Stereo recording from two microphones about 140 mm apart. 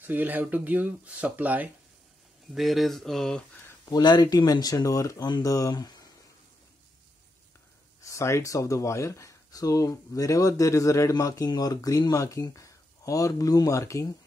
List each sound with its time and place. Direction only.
0.0 s speech: 15° right (ahead or behind)
2.5 s speech: centre (ahead or behind)
3.9 s speech: 30° left (ahead or behind)
8.0 s speech: 20° left (ahead or behind)